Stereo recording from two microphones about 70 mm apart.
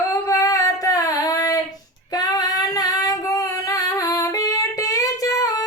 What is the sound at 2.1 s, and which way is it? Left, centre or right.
Female singing, left.